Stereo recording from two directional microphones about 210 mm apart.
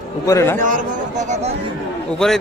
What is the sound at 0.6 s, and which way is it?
Speech, 40° right (ahead or behind).